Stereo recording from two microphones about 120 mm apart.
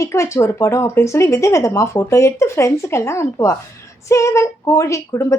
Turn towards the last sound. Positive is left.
turn(degrees=25)  # may be behind; listen again after turning